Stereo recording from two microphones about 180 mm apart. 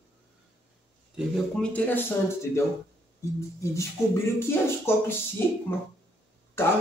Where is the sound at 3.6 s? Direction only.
15° left (ahead or behind).